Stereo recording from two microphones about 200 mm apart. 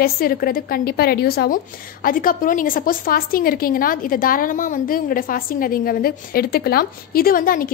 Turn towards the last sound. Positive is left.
turn(degrees=45)  # may be behind; listen again after turning